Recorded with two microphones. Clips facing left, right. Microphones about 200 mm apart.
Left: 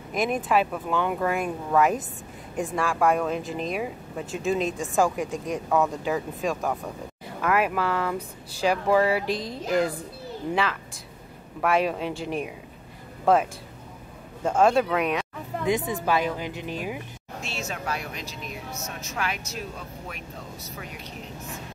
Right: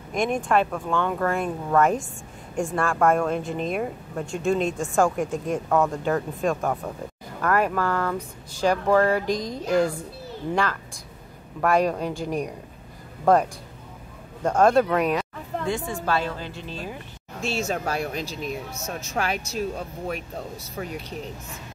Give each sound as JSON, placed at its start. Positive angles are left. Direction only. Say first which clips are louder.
{"t": 0.1, "sound": "a woman's voice", "louder": "right 1 dB", "side_deg": 5}
{"t": 15.6, "sound": "a woman's voice", "louder": "left 3 dB", "side_deg": 20}
{"t": 17.6, "sound": "speech", "louder": "right 5 dB", "side_deg": -40}